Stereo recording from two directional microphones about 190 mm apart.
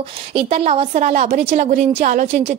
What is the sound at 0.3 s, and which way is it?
A woman's voice, 30° right (ahead or behind).